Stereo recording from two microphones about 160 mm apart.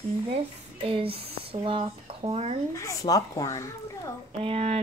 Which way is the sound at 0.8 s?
35° right (ahead or behind).